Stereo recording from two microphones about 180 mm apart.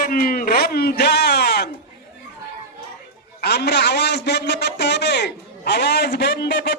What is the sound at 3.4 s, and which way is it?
A man's voice, 65° left (ahead or behind).